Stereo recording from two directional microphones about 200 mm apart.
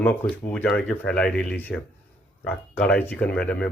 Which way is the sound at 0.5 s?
5° left (ahead or behind).